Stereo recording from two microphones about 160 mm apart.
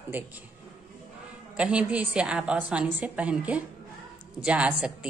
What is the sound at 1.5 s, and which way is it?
A woman's voice, 5° right (ahead or behind).